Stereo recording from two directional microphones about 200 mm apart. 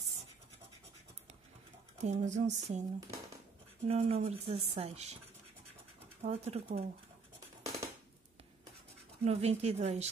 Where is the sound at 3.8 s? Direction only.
30° right (ahead or behind).